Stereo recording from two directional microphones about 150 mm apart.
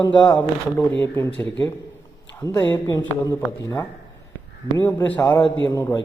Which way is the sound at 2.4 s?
15° left (ahead or behind).